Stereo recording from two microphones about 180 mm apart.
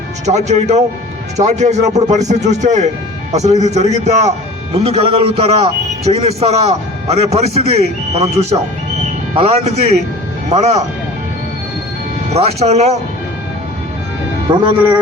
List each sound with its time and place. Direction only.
0.3 s a man's voice: 40° right (ahead or behind)
12.3 s a man's voice: 35° right (ahead or behind)
14.6 s speech: 25° right (ahead or behind)